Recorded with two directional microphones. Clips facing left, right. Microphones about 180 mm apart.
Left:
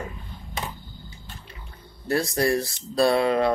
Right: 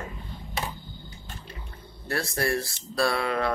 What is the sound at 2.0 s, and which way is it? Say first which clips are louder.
Speech: left 5 dB; 20° left (ahead or behind).